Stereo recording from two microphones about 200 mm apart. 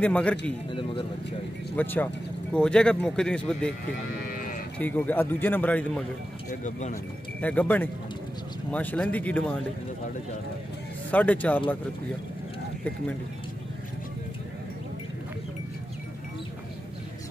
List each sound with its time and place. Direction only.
0.0 s a man's voice: 5° left (ahead or behind)
0.7 s speech: 25° left (ahead or behind)
1.8 s a man's voice: 10° left (ahead or behind)
4.2 s livestock: 45° left (ahead or behind)
4.7 s a man's voice: 10° left (ahead or behind)
6.5 s speech: 40° left (ahead or behind)
7.4 s a man's voice: 5° left (ahead or behind)
11.1 s a man's voice: 10° left (ahead or behind)